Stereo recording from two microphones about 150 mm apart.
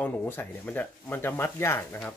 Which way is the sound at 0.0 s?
15° left (ahead or behind).